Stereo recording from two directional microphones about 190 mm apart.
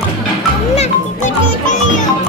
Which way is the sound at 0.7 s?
40° left (ahead or behind).